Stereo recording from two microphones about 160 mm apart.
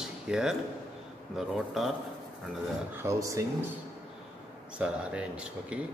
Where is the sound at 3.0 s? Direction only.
20° right (ahead or behind).